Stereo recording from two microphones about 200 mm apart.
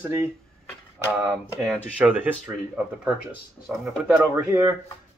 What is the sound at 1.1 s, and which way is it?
Speech, 5° right (ahead or behind).